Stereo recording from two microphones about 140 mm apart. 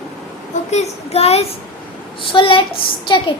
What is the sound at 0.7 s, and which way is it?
A child's voice, 50° left (ahead or behind).